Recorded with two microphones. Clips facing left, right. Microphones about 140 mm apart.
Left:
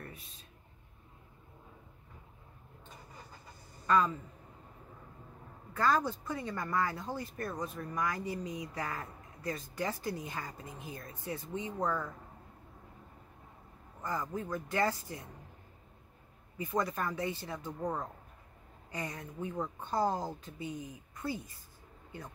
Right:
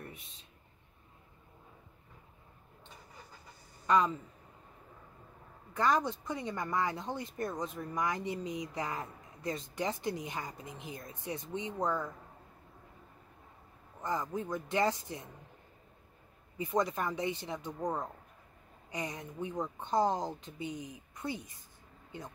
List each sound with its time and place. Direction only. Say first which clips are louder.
0.1 s a sound: even; 20° right (ahead or behind)
3.8 s speech: right 1 dB; 20° right (ahead or behind)
5.7 s speech: even; 20° right (ahead or behind)
14.0 s speech: right 2 dB; 20° right (ahead or behind)
16.5 s speech: right 2 dB; 20° right (ahead or behind)